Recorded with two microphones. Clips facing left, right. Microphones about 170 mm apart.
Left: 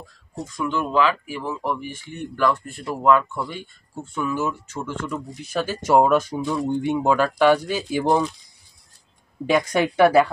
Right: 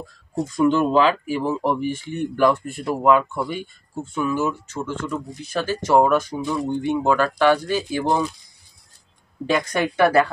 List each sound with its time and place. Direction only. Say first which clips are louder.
0.6 s speech: right 5 dB; 35° right (ahead or behind); by 8.0 s 10° left (ahead or behind)
8.0 s speech: left 4 dB; 5° right (ahead or behind)
9.5 s speech: left 2 dB; 15° left (ahead or behind)